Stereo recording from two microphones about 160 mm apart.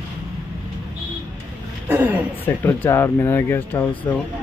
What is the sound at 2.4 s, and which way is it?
Speech, 15° left (ahead or behind).